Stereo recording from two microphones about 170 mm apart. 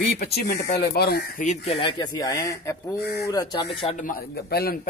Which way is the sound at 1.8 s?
25° left (ahead or behind).